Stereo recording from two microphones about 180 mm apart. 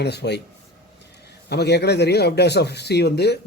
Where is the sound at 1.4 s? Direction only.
65° left (ahead or behind).